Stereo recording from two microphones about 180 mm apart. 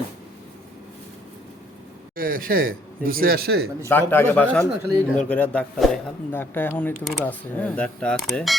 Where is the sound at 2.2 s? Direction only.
50° right (ahead or behind).